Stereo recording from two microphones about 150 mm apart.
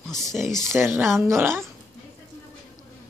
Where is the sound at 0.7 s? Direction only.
15° right (ahead or behind).